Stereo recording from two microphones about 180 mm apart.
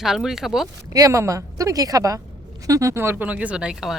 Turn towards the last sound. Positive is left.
turn(degrees=-5)  # may be behind; listen again after turning